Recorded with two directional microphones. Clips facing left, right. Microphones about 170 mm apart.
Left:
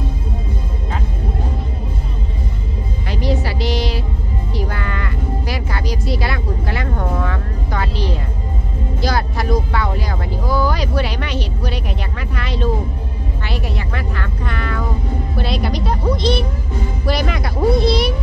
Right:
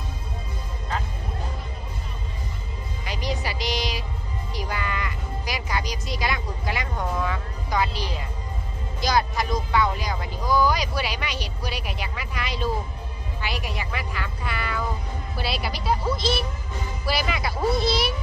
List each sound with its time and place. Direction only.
3.1 s music: 15° right (ahead or behind)
9.0 s vehicle: 15° right (ahead or behind)
9.8 s music: 15° right (ahead or behind)
10.6 s a sound: 15° right (ahead or behind)
13.4 s music: 15° right (ahead or behind)
15.3 s speech: 5° right (ahead or behind)